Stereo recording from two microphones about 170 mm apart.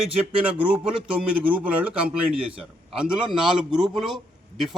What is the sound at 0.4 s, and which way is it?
A man's voice, 10° right (ahead or behind).